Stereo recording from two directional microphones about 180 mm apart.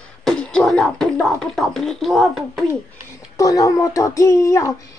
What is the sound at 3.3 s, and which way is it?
A child's voice, 20° left (ahead or behind).